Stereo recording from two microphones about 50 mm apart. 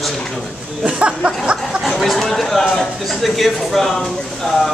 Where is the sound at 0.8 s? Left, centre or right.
Right.